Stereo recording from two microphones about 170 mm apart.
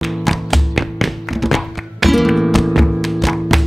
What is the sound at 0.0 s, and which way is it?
Music, centre (ahead or behind).